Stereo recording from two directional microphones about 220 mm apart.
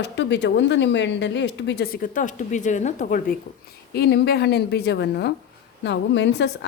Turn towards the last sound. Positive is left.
turn(degrees=50)  # may be behind; listen again after turning